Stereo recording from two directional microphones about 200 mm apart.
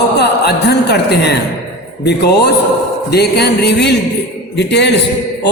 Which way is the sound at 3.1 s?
55° left (ahead or behind).